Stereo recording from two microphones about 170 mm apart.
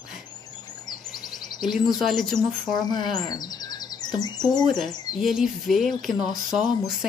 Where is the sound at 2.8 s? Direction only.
25° left (ahead or behind).